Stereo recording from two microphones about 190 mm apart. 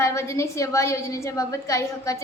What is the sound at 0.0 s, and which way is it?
A woman's voice, 15° left (ahead or behind).